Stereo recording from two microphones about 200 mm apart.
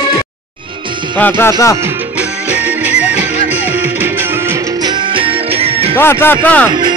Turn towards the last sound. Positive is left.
turn(degrees=10)  # may be behind; listen again after turning